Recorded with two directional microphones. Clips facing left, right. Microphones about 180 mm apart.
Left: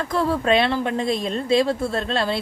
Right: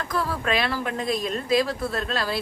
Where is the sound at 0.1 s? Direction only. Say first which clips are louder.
Left 6 dB; 25° left (ahead or behind).